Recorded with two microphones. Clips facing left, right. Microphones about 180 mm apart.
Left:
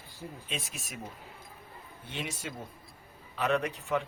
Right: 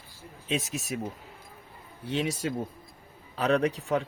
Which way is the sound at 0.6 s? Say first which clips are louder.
Right 11 dB; 40° right (ahead or behind).